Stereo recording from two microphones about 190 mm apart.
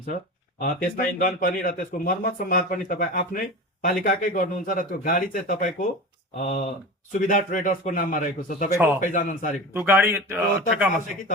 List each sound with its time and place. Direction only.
0.6 s speech: 45° left (ahead or behind)
9.7 s a man's voice: 10° right (ahead or behind)